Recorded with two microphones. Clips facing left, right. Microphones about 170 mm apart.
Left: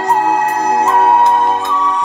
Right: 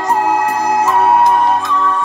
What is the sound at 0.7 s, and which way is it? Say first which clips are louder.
Music: left 1 dB; 30° left (ahead or behind).